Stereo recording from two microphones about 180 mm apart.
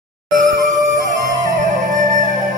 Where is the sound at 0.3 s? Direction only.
45° right (ahead or behind).